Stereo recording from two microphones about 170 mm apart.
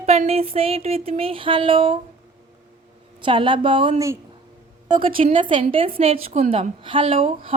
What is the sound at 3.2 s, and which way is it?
Speech, 30° right (ahead or behind).